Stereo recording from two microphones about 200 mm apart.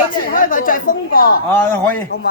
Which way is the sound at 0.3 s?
45° left (ahead or behind).